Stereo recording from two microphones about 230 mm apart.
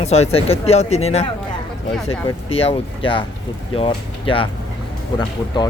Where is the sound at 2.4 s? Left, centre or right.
Left.